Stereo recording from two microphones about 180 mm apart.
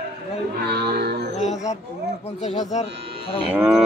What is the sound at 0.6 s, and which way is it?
Music, 60° right (ahead or behind).